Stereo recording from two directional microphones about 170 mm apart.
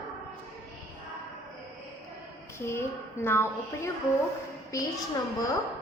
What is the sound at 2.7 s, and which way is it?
A woman's voice, 15° left (ahead or behind).